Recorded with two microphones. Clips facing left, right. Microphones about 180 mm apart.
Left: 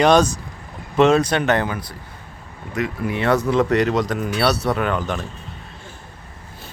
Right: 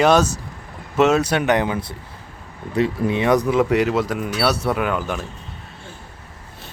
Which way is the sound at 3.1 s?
15° right (ahead or behind).